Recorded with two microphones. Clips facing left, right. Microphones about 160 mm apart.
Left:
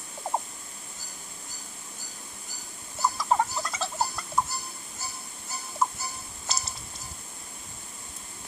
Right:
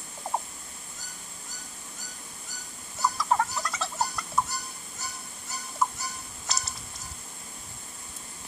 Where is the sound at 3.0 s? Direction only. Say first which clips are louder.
Left 1 dB; 25° left (ahead or behind).